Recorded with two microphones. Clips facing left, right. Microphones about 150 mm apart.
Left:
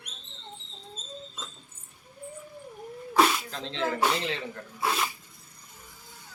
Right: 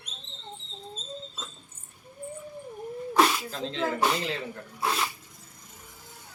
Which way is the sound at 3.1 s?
Centre (ahead or behind).